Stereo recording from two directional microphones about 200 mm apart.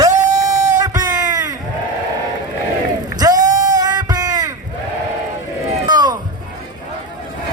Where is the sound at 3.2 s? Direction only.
20° right (ahead or behind).